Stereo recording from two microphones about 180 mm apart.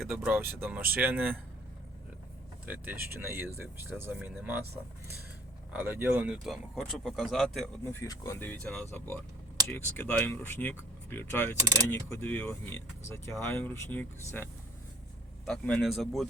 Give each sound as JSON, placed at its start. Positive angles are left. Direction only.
{"t": 0.0, "sound": "speech", "side_deg": 0}
{"t": 0.3, "sound": "speech", "side_deg": -10}
{"t": 2.6, "sound": "speech", "side_deg": -10}
{"t": 5.7, "sound": "speech", "side_deg": -10}
{"t": 8.0, "sound": "speech", "side_deg": 20}
{"t": 11.6, "sound": "speech", "side_deg": -20}
{"t": 11.9, "sound": "speech", "side_deg": 10}